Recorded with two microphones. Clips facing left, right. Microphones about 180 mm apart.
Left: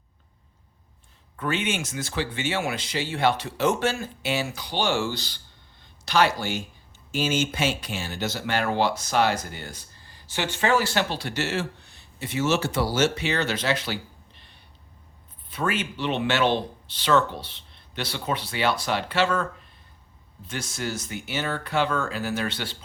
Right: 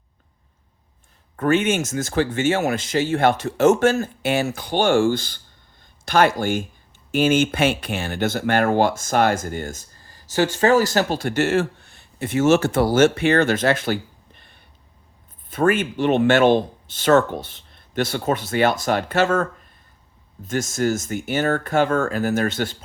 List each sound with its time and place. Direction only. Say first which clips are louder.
1.4 s speech: right 9 dB; 45° right (ahead or behind)